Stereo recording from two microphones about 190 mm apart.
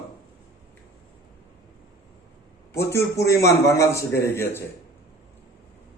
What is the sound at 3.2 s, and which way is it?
Speech, 15° left (ahead or behind).